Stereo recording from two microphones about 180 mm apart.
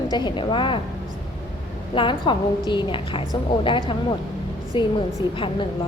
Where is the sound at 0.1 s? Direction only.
25° left (ahead or behind).